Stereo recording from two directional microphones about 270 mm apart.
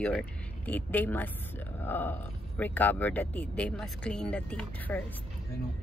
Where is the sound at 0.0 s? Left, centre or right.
Centre.